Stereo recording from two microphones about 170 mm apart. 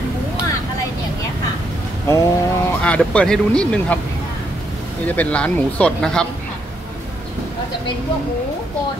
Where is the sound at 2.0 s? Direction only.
15° left (ahead or behind).